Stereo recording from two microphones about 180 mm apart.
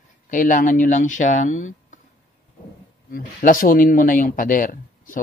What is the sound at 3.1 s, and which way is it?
Speech, 50° left (ahead or behind).